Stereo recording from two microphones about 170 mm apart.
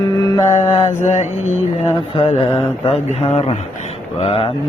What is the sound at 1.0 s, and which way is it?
Mantra, 45° left (ahead or behind).